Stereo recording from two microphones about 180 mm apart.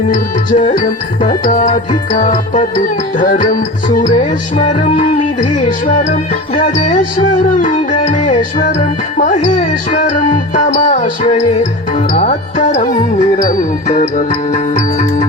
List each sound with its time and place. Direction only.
0.1 s music: 45° left (ahead or behind)
4.9 s music: 30° left (ahead or behind)
5.4 s music: 45° left (ahead or behind)